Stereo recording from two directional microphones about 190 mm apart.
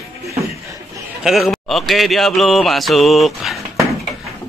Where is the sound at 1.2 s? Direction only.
Centre (ahead or behind).